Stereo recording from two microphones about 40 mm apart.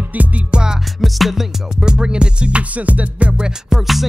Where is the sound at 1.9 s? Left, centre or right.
Right.